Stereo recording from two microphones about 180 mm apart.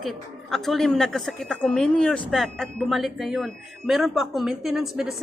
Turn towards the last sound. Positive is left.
turn(degrees=0)  # may be behind; listen again after turning